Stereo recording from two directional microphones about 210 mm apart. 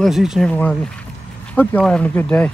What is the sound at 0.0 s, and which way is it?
Speech, centre (ahead or behind).